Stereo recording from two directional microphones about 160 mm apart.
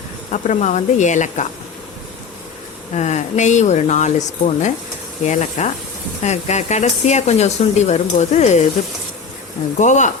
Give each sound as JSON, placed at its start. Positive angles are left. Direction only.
{"t": 0.3, "sound": "speech", "side_deg": 50}
{"t": 2.9, "sound": "speech", "side_deg": 45}
{"t": 9.7, "sound": "speech", "side_deg": 50}